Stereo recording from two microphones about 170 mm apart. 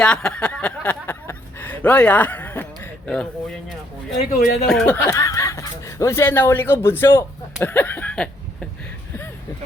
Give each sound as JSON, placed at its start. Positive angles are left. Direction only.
{"t": 0.0, "sound": "a sound", "side_deg": 5}
{"t": 4.2, "sound": "speech", "side_deg": 50}
{"t": 4.6, "sound": "speech", "side_deg": 0}
{"t": 4.9, "sound": "speech", "side_deg": 20}